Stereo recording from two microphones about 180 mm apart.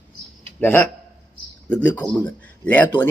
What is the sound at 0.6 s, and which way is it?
Speech, 10° left (ahead or behind).